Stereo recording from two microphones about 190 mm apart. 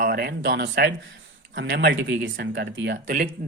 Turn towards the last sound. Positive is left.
turn(degrees=-50)  # may be behind; listen again after turning